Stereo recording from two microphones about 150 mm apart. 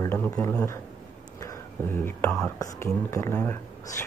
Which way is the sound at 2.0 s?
15° left (ahead or behind).